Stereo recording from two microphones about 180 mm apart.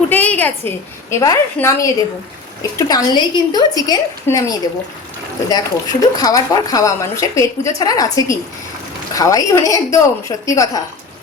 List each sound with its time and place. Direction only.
0.1 s a woman's voice: 10° left (ahead or behind)